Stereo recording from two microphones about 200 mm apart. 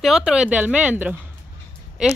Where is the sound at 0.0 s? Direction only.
Centre (ahead or behind).